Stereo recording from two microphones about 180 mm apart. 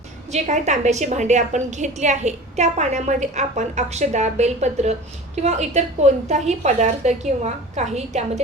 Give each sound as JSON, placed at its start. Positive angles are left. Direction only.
{"t": 0.3, "sound": "a woman's voice", "side_deg": -40}